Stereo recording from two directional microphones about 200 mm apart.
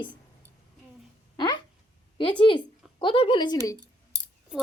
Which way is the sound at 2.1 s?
25° left (ahead or behind).